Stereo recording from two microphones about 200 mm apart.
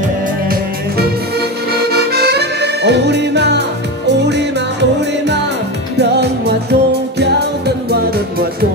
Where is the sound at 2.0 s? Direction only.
50° right (ahead or behind).